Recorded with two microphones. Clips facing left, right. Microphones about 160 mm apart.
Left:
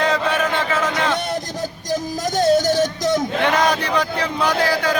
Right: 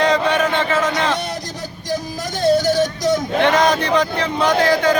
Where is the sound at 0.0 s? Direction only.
5° left (ahead or behind).